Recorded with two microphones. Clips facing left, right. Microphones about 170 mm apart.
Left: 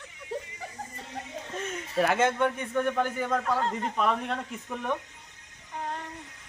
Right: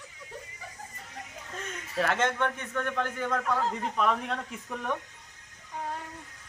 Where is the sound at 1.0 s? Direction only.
30° left (ahead or behind).